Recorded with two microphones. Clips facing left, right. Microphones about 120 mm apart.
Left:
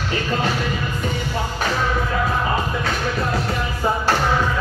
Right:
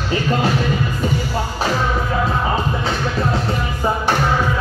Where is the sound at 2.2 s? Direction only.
25° right (ahead or behind).